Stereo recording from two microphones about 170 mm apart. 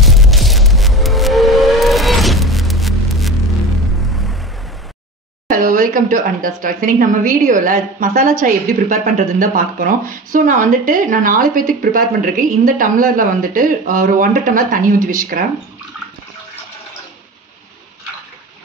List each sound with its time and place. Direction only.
0.0 s music: centre (ahead or behind)
5.5 s speech: 55° right (ahead or behind)